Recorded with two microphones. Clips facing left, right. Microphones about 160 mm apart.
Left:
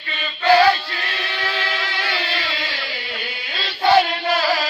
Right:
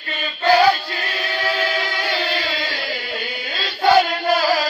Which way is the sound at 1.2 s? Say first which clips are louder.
Right 5 dB; 45° right (ahead or behind).